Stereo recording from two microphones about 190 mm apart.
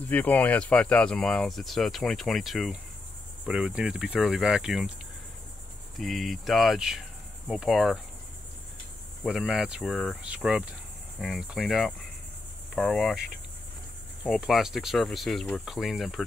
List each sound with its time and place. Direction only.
0.0 s speech: 10° left (ahead or behind)
5.9 s cricket: centre (ahead or behind)
9.2 s speech: 5° right (ahead or behind)
14.2 s speech: centre (ahead or behind)